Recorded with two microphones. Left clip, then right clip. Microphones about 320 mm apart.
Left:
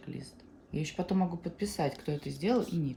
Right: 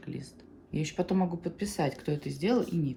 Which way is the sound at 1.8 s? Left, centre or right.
Right.